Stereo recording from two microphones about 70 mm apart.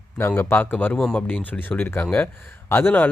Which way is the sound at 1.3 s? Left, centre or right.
Left.